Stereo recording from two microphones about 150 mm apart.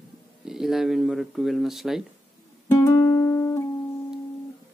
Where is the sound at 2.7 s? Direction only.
20° left (ahead or behind).